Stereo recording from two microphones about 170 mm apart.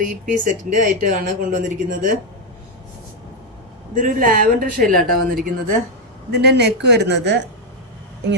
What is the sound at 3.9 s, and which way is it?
A woman's voice, 55° right (ahead or behind).